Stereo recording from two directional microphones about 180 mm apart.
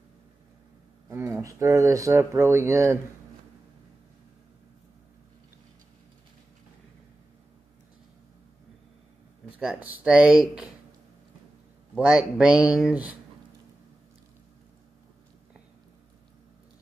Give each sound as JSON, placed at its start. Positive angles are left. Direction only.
{"t": 1.1, "sound": "speech", "side_deg": -15}
{"t": 9.6, "sound": "speech", "side_deg": -5}
{"t": 11.9, "sound": "speech", "side_deg": -5}